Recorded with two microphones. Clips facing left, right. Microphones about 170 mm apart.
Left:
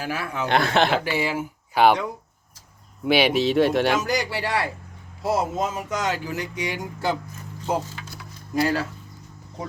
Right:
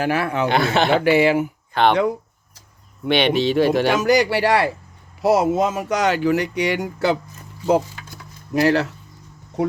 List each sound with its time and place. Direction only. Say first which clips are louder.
0.0 s speech: right 8 dB; 65° right (ahead or behind)
0.4 s speech: even; centre (ahead or behind)
1.0 s speech: right 10 dB; 70° right (ahead or behind)
1.7 s speech: even; 5° left (ahead or behind)
3.0 s speech: right 2 dB; 5° left (ahead or behind)
4.0 s speech: right 9 dB; 70° right (ahead or behind)
8.5 s speech: right 5 dB; 75° right (ahead or behind)